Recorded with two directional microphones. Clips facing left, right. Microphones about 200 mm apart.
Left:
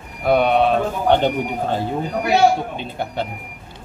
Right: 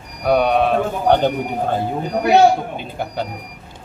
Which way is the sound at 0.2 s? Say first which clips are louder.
Even; centre (ahead or behind).